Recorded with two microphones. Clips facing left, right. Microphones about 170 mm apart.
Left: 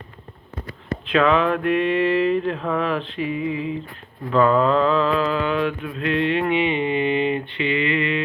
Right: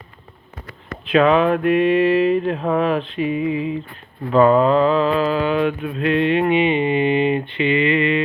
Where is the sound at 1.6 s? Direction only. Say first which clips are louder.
Right 4 dB; 15° right (ahead or behind).